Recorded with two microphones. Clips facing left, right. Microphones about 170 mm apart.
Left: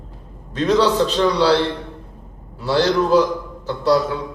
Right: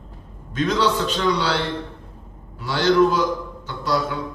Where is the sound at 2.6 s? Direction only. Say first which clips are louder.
Even; 35° left (ahead or behind).